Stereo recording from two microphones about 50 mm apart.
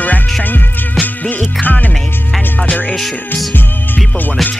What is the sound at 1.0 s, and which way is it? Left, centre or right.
Music, left.